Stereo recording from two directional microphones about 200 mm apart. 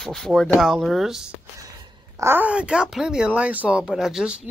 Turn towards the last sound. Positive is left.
turn(degrees=-5)  # may be behind; listen again after turning